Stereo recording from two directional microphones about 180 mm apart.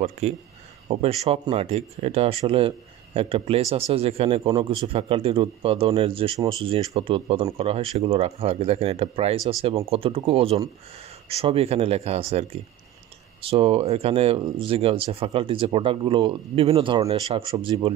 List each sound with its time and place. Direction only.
0.2 s a man's voice: 35° right (ahead or behind)